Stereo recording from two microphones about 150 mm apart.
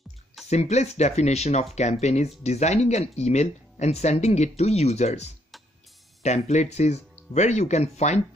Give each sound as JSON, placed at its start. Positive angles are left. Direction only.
{"t": 0.5, "sound": "speech", "side_deg": 50}